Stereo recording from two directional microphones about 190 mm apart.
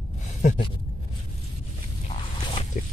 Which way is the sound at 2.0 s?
30° left (ahead or behind).